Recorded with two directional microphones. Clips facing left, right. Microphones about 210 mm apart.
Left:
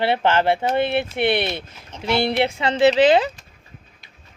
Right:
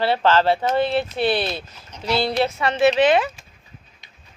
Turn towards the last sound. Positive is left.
turn(degrees=35)  # may be behind; listen again after turning